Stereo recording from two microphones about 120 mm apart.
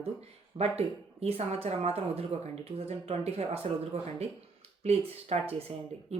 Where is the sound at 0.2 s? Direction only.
55° right (ahead or behind).